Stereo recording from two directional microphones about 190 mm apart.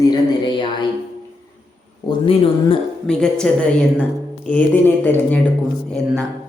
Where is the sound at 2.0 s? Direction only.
30° left (ahead or behind).